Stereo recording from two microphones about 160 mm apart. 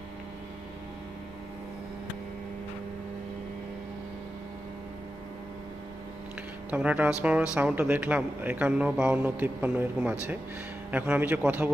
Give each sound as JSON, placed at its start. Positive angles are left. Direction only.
{"t": 6.7, "sound": "speech", "side_deg": -10}